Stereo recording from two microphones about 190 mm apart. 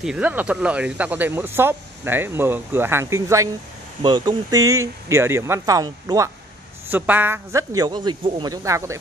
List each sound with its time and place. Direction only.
0.0 s speech: 5° right (ahead or behind)